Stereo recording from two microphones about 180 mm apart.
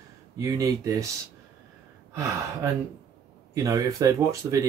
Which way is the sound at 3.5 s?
20° right (ahead or behind).